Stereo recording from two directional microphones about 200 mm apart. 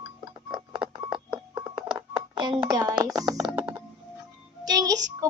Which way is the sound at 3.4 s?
5° right (ahead or behind).